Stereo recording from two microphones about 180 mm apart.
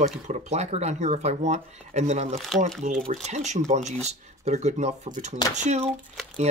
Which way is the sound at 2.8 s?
50° right (ahead or behind).